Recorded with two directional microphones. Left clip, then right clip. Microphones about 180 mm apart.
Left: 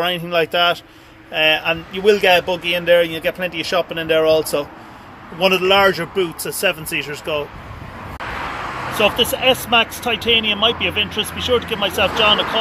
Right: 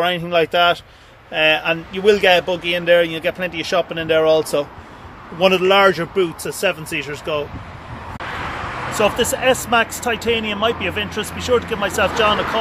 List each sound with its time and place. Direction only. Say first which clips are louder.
0.0 s a man's voice: right 1 dB; 15° right (ahead or behind)
8.2 s vehicle: left 1 dB; 30° left (ahead or behind)
8.9 s a man's voice: left 1 dB; 5° right (ahead or behind)
10.1 s speech: left 6 dB; 45° right (ahead or behind)
11.7 s a man's voice: even; 5° right (ahead or behind)